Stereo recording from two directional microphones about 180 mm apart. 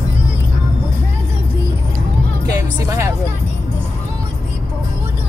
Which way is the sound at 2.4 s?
15° right (ahead or behind).